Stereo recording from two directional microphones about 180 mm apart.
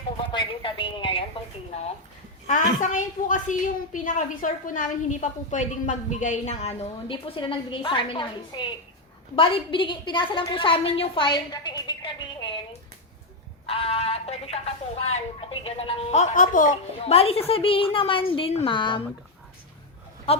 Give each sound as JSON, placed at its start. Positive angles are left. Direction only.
{"t": 0.3, "sound": "a sound", "side_deg": 25}
{"t": 2.8, "sound": "a woman's voice", "side_deg": 45}
{"t": 13.7, "sound": "speech", "side_deg": 30}
{"t": 17.0, "sound": "a woman's voice", "side_deg": 35}
{"t": 20.3, "sound": "speech", "side_deg": 30}